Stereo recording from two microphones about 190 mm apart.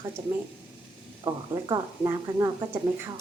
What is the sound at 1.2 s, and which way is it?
Speech, 20° right (ahead or behind).